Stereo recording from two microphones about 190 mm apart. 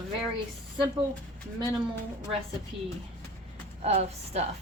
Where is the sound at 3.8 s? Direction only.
35° right (ahead or behind).